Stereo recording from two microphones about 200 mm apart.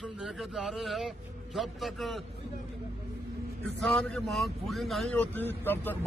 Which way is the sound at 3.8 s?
5° left (ahead or behind).